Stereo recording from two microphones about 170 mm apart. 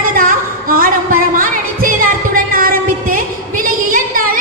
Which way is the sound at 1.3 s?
55° right (ahead or behind).